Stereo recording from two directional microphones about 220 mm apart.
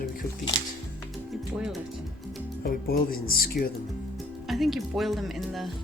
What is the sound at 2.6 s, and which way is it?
Speech, 40° left (ahead or behind).